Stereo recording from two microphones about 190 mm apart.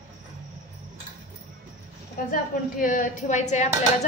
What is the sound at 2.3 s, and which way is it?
Speech, 45° left (ahead or behind).